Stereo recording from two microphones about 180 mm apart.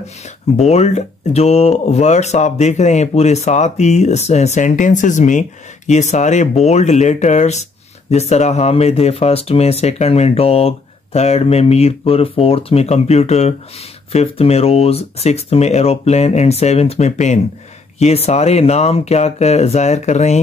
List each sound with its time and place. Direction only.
0.6 s speech: 35° left (ahead or behind)